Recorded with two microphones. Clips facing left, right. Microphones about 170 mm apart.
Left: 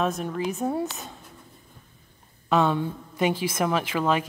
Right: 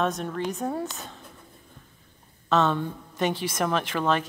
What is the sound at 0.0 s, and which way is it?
Speech, 5° left (ahead or behind).